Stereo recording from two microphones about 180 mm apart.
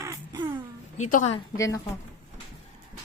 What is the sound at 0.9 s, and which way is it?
Speech, 40° left (ahead or behind).